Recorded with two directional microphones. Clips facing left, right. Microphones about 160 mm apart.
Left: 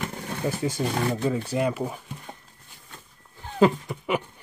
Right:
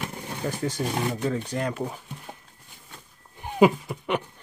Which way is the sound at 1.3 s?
5° left (ahead or behind).